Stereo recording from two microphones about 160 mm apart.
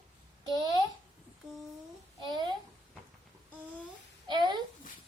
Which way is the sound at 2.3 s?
30° right (ahead or behind).